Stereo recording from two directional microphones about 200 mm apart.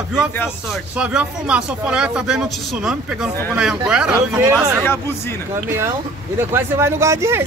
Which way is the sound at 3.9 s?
5° right (ahead or behind).